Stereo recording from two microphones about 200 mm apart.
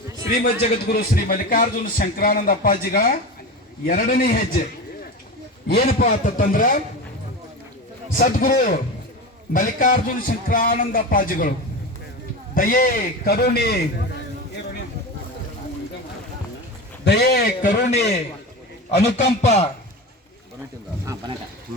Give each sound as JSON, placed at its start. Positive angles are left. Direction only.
{"t": 0.5, "sound": "a man's voice", "side_deg": 50}
{"t": 5.6, "sound": "a man's voice", "side_deg": 50}
{"t": 8.2, "sound": "a man's voice", "side_deg": 45}
{"t": 12.5, "sound": "a man's voice", "side_deg": 45}
{"t": 17.1, "sound": "a man's voice", "side_deg": 55}
{"t": 21.0, "sound": "speech", "side_deg": -15}